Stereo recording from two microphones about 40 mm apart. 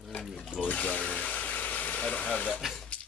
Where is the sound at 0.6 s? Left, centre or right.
Left.